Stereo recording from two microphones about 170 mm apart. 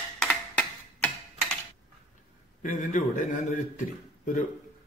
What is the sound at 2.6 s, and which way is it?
A man's voice, 50° left (ahead or behind).